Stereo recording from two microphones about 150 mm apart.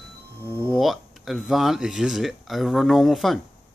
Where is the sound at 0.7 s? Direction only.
Centre (ahead or behind).